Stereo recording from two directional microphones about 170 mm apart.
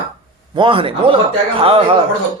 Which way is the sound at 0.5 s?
30° right (ahead or behind).